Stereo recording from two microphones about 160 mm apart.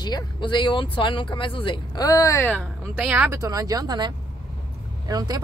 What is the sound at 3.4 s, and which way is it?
Speech, 20° right (ahead or behind).